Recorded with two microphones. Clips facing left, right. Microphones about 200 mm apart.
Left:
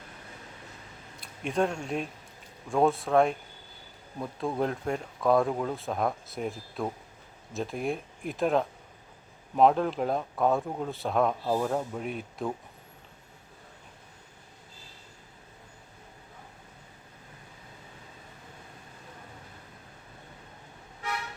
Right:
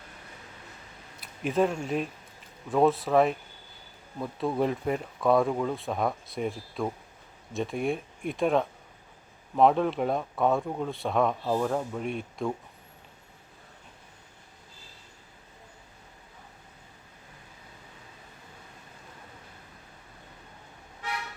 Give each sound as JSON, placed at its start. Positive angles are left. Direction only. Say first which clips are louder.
{"t": 1.2, "sound": "speech", "louder": "right 2 dB", "side_deg": -5}